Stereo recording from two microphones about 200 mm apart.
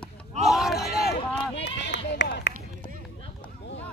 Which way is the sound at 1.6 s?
60° left (ahead or behind).